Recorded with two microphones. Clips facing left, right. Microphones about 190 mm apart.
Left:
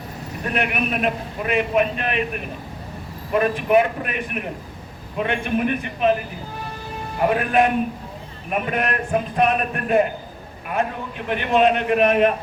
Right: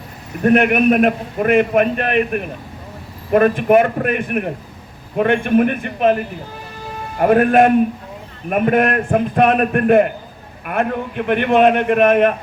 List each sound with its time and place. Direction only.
0.4 s a man's voice: 55° right (ahead or behind)